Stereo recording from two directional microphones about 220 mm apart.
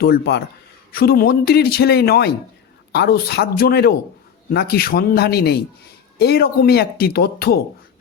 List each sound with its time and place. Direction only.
0.0 s speech: 45° left (ahead or behind)